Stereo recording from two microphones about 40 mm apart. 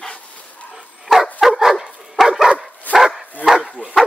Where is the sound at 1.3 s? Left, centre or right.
Centre.